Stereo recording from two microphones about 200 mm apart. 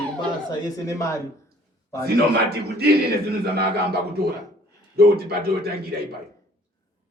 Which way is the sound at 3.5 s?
55° right (ahead or behind).